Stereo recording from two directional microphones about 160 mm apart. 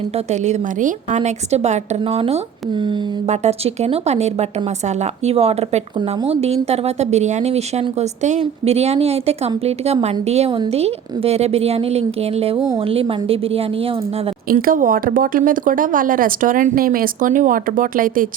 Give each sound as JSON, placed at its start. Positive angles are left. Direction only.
{"t": 0.3, "sound": "a woman's voice", "side_deg": -50}
{"t": 14.5, "sound": "speech", "side_deg": -60}